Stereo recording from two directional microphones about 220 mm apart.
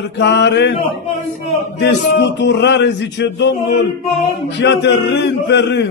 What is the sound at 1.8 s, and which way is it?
A man's voice, 50° left (ahead or behind).